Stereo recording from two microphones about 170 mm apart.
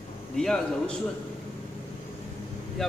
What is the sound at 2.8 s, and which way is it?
Speech, centre (ahead or behind).